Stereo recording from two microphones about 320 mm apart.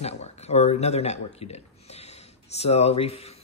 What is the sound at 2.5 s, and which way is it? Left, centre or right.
Speech, centre.